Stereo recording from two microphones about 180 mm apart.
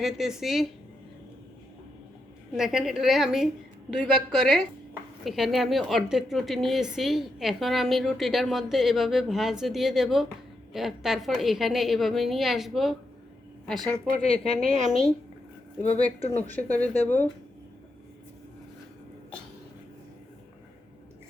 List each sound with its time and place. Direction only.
0.0 s a woman's voice: centre (ahead or behind)
2.5 s a woman's voice: centre (ahead or behind)
14.2 s speech: 35° left (ahead or behind)
16.3 s speech: 10° left (ahead or behind)